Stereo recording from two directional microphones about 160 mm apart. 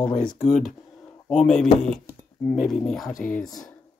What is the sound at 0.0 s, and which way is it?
Speech, 55° left (ahead or behind).